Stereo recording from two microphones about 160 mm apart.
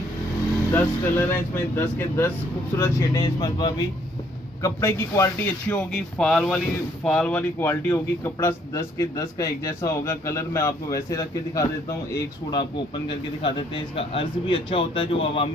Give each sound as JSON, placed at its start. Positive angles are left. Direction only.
{"t": 0.7, "sound": "a man's voice", "side_deg": 15}
{"t": 3.3, "sound": "speech", "side_deg": 30}
{"t": 5.9, "sound": "a man's voice", "side_deg": 5}
{"t": 13.4, "sound": "speech", "side_deg": 30}